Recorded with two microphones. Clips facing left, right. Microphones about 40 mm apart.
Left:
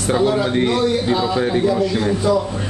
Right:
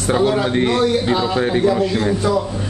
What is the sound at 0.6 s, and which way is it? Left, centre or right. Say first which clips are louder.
Speech: right 1 dB; right.